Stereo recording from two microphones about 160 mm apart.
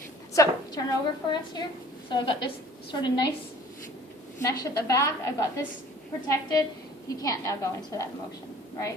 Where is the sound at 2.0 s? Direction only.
30° left (ahead or behind).